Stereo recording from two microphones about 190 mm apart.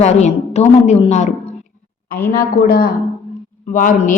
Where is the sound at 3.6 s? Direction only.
45° left (ahead or behind).